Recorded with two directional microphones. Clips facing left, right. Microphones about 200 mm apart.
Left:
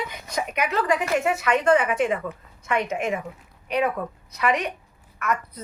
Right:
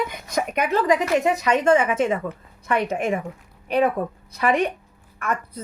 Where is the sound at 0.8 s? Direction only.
20° right (ahead or behind).